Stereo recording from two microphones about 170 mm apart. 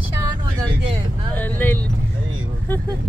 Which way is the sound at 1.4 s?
10° left (ahead or behind).